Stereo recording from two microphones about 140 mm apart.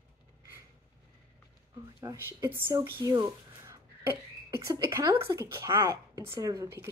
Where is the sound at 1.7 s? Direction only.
25° right (ahead or behind).